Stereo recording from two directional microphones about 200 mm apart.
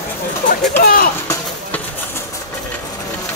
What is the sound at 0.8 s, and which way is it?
Music, 45° left (ahead or behind).